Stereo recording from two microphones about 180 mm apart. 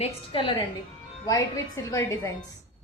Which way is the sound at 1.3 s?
15° left (ahead or behind).